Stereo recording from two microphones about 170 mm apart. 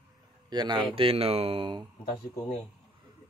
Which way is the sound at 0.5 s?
25° right (ahead or behind).